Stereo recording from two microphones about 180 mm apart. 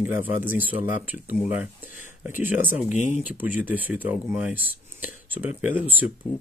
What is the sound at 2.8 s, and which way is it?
Speech, 40° left (ahead or behind).